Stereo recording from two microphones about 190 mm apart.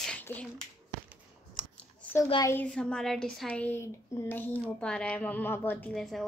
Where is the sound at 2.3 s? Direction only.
20° left (ahead or behind).